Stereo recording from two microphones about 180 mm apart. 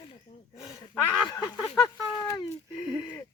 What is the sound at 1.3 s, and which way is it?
Speech, 20° left (ahead or behind).